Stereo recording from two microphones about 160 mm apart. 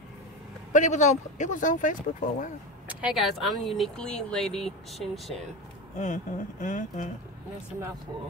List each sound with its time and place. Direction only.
0.7 s speech: 50° left (ahead or behind)
2.9 s speech: 5° right (ahead or behind)
5.9 s speech: 50° left (ahead or behind)